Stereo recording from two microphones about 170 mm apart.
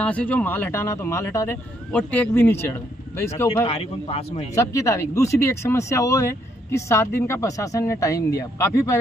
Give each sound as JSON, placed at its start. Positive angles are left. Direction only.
{"t": 0.0, "sound": "speech", "side_deg": 10}
{"t": 3.6, "sound": "a man's voice", "side_deg": 35}
{"t": 4.6, "sound": "speech", "side_deg": 20}